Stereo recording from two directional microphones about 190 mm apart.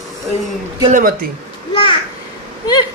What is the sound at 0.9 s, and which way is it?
Speech, 50° right (ahead or behind).